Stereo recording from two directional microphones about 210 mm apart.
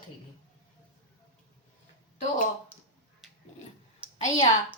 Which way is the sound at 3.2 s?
Centre (ahead or behind).